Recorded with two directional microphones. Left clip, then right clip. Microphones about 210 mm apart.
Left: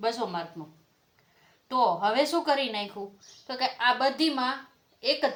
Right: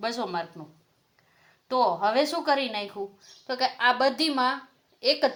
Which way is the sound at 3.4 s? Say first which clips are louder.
Right 2 dB; 40° right (ahead or behind).